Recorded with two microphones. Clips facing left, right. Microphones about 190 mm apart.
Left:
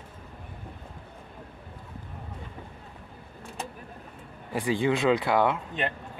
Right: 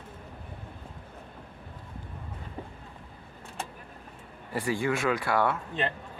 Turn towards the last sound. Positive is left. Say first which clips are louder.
# left 2 dB
turn(degrees=15)  # may be behind; listen again after turning